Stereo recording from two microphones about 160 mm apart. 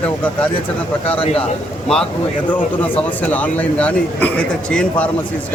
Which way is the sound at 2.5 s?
10° left (ahead or behind).